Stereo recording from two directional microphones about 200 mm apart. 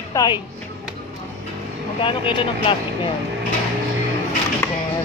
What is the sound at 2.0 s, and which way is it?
Speech, 25° left (ahead or behind).